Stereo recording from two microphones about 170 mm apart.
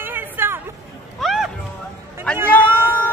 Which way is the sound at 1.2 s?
Centre (ahead or behind).